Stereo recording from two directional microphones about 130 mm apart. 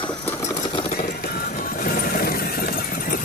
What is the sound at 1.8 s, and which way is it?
Squeal, 90° left.